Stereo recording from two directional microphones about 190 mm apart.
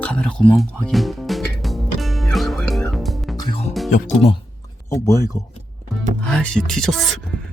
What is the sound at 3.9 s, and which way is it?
Speech, 35° left (ahead or behind).